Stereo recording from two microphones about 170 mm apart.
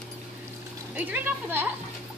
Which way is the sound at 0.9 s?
10° right (ahead or behind).